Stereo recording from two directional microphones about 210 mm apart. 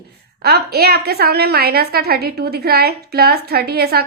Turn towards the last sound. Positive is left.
turn(degrees=-50)  # may be behind; listen again after turning